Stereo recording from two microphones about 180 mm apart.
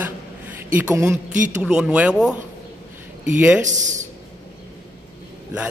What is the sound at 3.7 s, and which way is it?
Speech, 45° right (ahead or behind).